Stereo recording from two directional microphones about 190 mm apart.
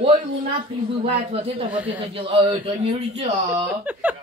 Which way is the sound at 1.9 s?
30° right (ahead or behind).